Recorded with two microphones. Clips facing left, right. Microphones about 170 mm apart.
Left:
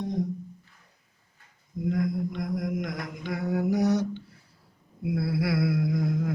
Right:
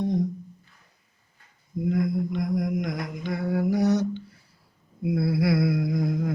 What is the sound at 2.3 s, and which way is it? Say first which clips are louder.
Mantra: right 4 dB; centre (ahead or behind).